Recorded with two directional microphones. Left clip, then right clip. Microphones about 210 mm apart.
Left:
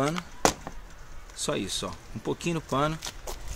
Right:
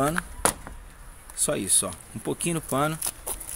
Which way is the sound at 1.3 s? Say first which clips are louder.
Right 3 dB; 15° right (ahead or behind).